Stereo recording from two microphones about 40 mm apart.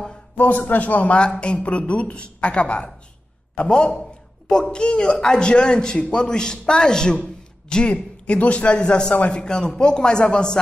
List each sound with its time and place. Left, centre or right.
0.4 s a man's voice: left